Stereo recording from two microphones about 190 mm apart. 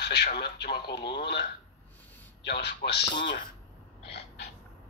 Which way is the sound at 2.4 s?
60° left (ahead or behind).